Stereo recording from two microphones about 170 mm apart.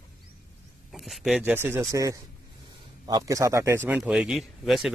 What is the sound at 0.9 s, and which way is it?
Speech, centre (ahead or behind).